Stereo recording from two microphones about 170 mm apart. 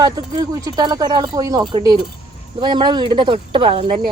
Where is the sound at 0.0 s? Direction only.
20° right (ahead or behind).